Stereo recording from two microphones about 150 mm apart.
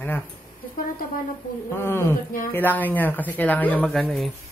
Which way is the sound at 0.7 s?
70° left (ahead or behind).